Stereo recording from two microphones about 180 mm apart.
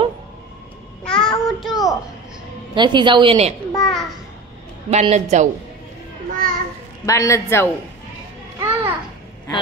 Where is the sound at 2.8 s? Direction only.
25° right (ahead or behind).